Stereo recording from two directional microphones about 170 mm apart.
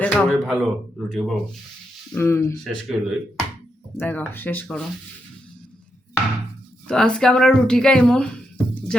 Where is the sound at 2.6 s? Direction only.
Centre (ahead or behind).